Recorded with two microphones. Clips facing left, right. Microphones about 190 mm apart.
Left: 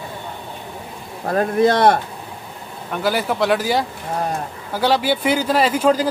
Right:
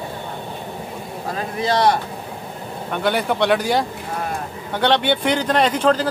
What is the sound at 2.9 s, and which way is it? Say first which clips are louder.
Speech: even; centre (ahead or behind).